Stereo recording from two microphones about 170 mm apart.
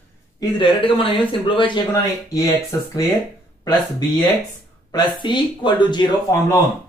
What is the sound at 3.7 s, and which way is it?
Speech, 25° left (ahead or behind).